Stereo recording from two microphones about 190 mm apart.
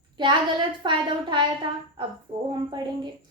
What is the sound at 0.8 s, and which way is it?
A woman's voice, 25° right (ahead or behind).